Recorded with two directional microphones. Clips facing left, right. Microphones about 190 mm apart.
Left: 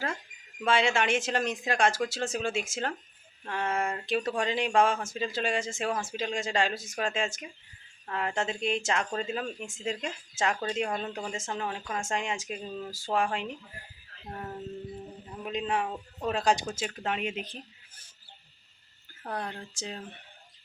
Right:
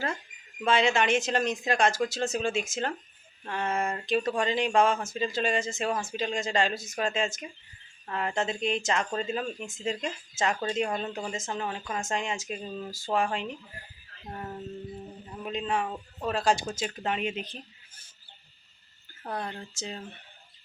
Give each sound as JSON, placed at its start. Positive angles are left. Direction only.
{"t": 0.6, "sound": "speech", "side_deg": 10}
{"t": 11.3, "sound": "speech", "side_deg": 10}
{"t": 15.4, "sound": "speech", "side_deg": 5}
{"t": 16.3, "sound": "speech", "side_deg": 15}
{"t": 16.8, "sound": "speech", "side_deg": 0}
{"t": 19.4, "sound": "speech", "side_deg": 10}